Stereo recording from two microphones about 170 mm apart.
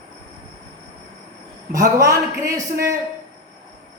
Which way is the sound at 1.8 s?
20° right (ahead or behind).